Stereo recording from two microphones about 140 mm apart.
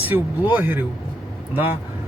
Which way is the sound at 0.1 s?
15° right (ahead or behind).